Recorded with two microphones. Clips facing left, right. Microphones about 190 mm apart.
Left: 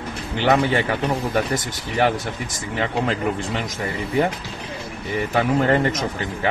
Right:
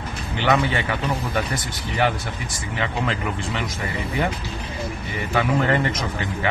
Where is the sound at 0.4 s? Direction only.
45° left (ahead or behind).